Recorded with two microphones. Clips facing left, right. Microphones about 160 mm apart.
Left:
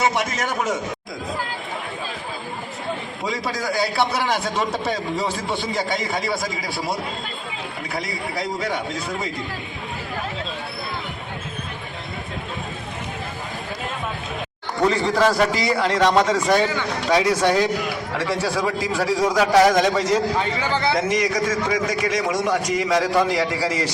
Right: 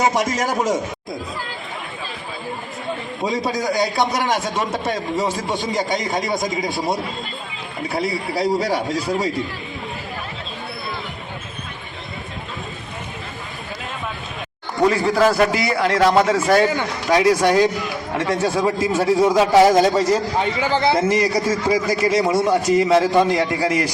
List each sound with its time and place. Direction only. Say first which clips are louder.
0.0 s a man's voice: right 3 dB; 40° right (ahead or behind)
3.2 s a man's voice: right 4 dB; 25° right (ahead or behind); by 5.5 s 5° right (ahead or behind)
5.7 s a man's voice: right 4 dB; 15° right (ahead or behind); by 9.1 s 35° right (ahead or behind)
14.8 s a man's voice: right 2 dB; 5° right (ahead or behind)
18.1 s a man's voice: right 5 dB; 25° right (ahead or behind)